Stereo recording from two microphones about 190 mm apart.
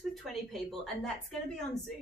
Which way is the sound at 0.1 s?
Centre (ahead or behind).